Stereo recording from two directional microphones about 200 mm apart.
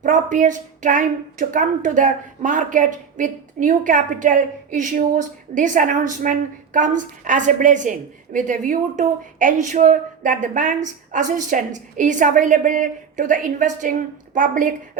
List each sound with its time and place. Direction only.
0.0 s a woman's voice: 40° right (ahead or behind)